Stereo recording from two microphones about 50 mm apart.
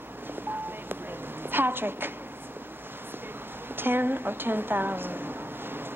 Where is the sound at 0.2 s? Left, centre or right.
Right.